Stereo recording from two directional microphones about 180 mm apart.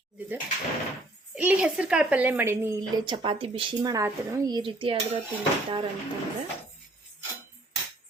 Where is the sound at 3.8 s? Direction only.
15° right (ahead or behind).